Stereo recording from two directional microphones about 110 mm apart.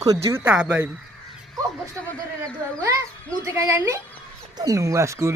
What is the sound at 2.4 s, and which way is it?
Speech, 30° right (ahead or behind).